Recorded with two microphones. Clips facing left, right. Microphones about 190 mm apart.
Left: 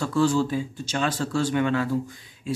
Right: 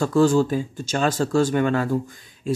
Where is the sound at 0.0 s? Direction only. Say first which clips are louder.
Right 4 dB; 45° right (ahead or behind).